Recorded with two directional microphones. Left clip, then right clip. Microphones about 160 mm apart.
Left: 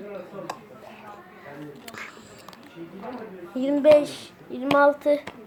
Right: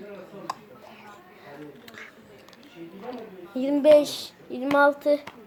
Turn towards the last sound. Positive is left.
turn(degrees=-15)  # may be behind; listen again after turning